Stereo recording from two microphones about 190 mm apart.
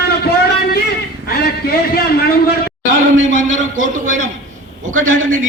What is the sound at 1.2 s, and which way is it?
A man's voice, 55° left (ahead or behind).